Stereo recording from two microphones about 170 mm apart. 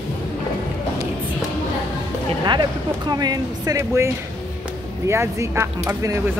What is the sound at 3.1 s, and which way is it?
Speech, 25° right (ahead or behind).